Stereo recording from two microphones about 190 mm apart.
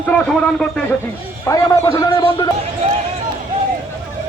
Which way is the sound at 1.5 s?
15° left (ahead or behind).